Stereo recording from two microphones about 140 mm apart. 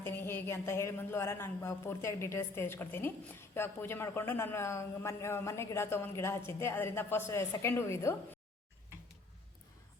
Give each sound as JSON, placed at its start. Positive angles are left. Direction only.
{"t": 0.0, "sound": "a man's voice", "side_deg": 15}